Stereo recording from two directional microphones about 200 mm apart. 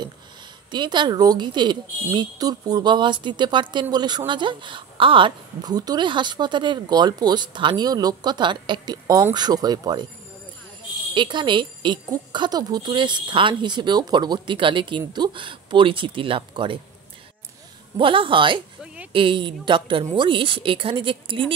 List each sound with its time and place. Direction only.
0.7 s a woman's voice: 20° right (ahead or behind)
11.1 s a woman's voice: 25° right (ahead or behind)
17.9 s a woman's voice: 25° right (ahead or behind)